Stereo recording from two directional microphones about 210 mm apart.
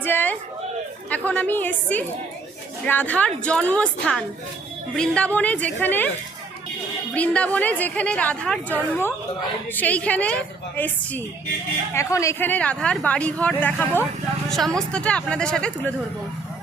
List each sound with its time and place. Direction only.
0.0 s a sound: 10° left (ahead or behind)
1.1 s a woman's voice: 5° left (ahead or behind)
7.1 s a woman's voice: 5° left (ahead or behind)